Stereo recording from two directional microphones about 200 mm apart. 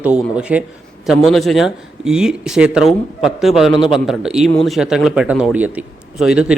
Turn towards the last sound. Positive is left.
turn(degrees=-5)  # may be behind; listen again after turning